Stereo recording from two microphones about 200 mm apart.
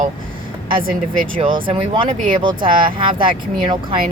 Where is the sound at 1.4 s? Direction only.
25° right (ahead or behind).